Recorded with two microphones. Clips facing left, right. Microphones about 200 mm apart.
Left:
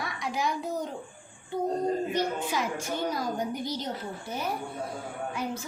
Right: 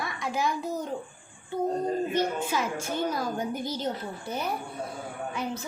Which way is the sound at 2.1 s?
15° left (ahead or behind).